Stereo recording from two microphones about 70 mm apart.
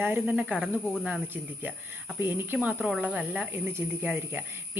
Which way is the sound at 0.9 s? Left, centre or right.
Centre.